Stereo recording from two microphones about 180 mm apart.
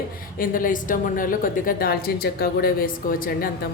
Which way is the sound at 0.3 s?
50° left (ahead or behind).